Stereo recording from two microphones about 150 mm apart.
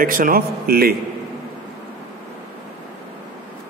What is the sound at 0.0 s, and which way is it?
Speech, 65° right (ahead or behind).